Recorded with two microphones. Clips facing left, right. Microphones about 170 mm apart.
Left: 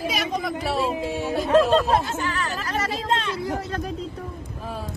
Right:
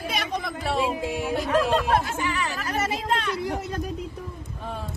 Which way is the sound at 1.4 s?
30° left (ahead or behind).